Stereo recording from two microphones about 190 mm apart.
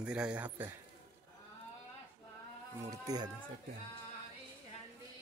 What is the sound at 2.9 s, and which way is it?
Speech, 20° right (ahead or behind).